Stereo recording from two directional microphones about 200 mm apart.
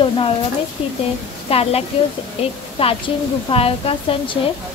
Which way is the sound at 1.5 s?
30° left (ahead or behind).